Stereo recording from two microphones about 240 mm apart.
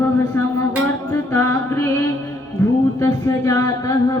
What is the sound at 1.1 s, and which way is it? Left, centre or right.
Music, centre.